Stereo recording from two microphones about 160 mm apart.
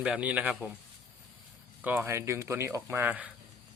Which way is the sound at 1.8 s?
10° right (ahead or behind).